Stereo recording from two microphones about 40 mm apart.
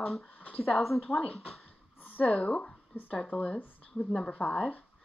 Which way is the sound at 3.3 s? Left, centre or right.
Left.